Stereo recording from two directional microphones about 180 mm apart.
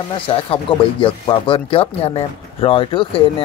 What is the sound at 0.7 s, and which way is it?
Speech, 30° left (ahead or behind).